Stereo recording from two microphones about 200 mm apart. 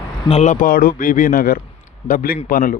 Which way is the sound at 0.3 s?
35° left (ahead or behind).